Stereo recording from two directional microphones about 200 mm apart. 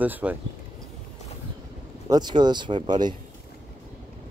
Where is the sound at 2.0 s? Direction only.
20° right (ahead or behind).